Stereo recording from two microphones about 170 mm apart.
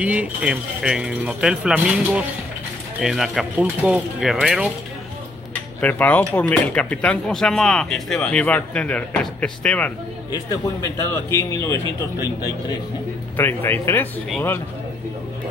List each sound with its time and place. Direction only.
0.0 s speech: 5° right (ahead or behind)
5.5 s a sound: 10° left (ahead or behind)
6.3 s speech: 10° left (ahead or behind)
10.3 s speech: 20° left (ahead or behind)
13.4 s speech: 10° left (ahead or behind)